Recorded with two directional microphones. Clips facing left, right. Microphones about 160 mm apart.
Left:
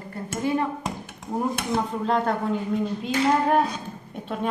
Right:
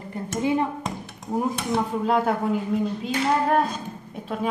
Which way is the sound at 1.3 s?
5° right (ahead or behind).